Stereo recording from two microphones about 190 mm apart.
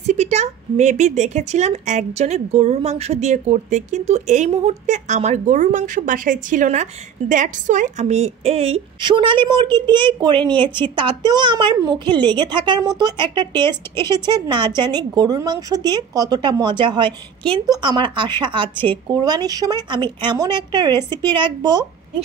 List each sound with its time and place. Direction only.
0.0 s speech: 35° right (ahead or behind)